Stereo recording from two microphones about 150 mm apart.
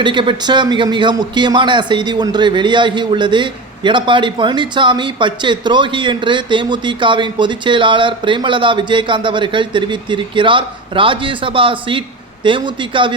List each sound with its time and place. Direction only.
0.0 s a man's voice: 30° right (ahead or behind)